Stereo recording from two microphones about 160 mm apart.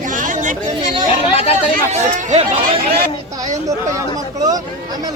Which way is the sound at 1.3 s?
40° left (ahead or behind).